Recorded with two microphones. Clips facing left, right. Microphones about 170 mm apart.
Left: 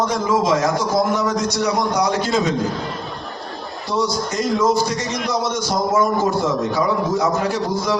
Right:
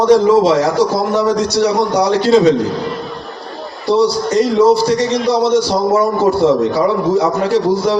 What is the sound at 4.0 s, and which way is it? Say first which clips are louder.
A man's voice: right 7 dB; 30° right (ahead or behind).